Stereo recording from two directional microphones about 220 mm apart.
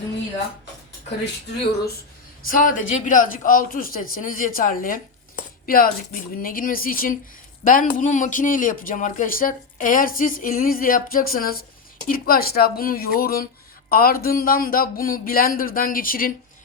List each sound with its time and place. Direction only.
2.4 s a man's voice: 40° left (ahead or behind)